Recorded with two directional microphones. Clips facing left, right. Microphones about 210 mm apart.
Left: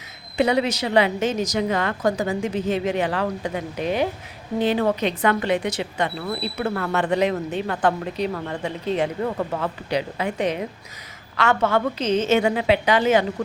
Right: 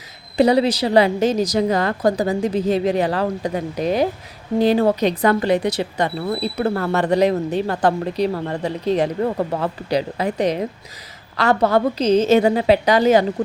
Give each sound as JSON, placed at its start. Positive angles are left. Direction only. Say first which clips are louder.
{"t": 0.3, "sound": "speech", "louder": "right 5 dB", "side_deg": -35}